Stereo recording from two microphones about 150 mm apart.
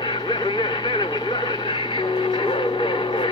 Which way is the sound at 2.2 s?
35° left (ahead or behind).